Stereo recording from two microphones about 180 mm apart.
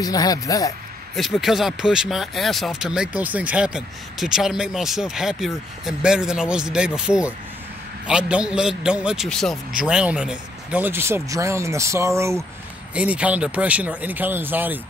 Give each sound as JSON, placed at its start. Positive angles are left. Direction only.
{"t": 0.0, "sound": "speech", "side_deg": 20}
{"t": 1.1, "sound": "a man's voice", "side_deg": 0}